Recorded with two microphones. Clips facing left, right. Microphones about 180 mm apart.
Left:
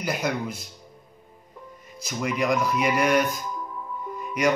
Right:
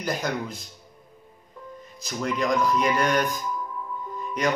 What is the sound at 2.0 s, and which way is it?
Speech, 10° left (ahead or behind).